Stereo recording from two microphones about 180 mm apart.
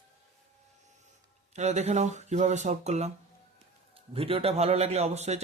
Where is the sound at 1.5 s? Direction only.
40° right (ahead or behind).